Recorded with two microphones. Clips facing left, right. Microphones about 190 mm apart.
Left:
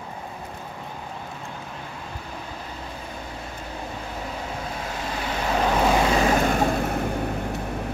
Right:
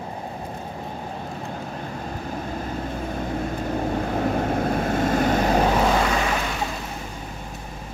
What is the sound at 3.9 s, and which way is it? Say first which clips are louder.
Vehicle: right 10 dB; 55° right (ahead or behind).